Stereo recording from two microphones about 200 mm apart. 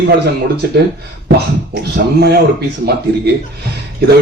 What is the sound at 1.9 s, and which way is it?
Speech, 55° right (ahead or behind).